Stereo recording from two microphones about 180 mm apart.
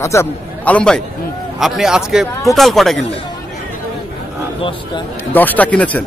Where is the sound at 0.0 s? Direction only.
15° left (ahead or behind).